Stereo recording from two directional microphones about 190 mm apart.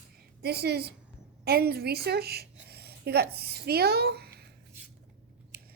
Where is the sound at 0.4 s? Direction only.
55° right (ahead or behind).